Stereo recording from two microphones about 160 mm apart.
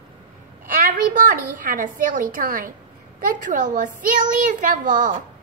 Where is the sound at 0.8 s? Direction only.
60° right (ahead or behind).